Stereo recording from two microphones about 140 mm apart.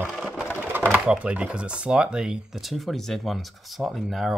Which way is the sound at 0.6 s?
15° right (ahead or behind).